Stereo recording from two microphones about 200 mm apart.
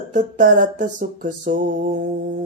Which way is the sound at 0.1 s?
40° right (ahead or behind).